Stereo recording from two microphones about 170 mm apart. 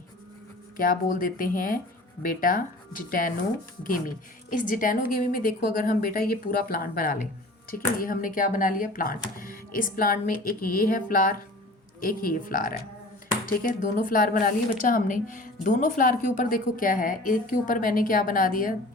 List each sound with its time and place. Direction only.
0.8 s a woman's voice: 55° left (ahead or behind)